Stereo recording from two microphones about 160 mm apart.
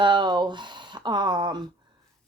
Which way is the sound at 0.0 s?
30° right (ahead or behind).